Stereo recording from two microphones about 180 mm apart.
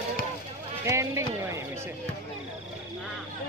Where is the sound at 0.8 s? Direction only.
15° right (ahead or behind).